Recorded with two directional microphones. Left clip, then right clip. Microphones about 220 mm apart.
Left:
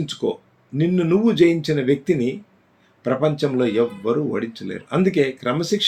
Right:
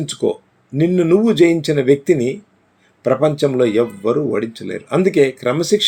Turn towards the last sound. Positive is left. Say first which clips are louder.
# right 6 dB
turn(degrees=-45)  # may be behind; listen again after turning